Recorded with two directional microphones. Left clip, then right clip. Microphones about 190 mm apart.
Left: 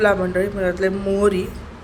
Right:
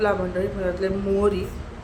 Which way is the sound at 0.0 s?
20° left (ahead or behind).